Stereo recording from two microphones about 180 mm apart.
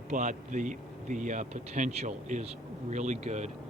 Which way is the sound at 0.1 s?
45° right (ahead or behind).